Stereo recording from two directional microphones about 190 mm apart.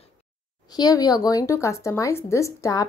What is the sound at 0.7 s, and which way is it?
Speech, 20° left (ahead or behind).